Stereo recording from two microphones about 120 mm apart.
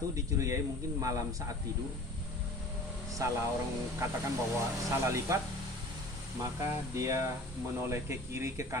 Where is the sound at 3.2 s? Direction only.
25° right (ahead or behind).